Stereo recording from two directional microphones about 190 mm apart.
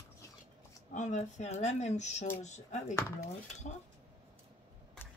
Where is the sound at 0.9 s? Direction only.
40° left (ahead or behind).